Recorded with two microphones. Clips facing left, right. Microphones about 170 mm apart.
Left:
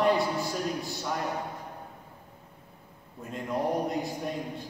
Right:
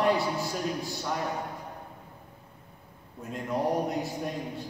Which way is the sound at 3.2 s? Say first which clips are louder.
Right 1 dB; centre (ahead or behind).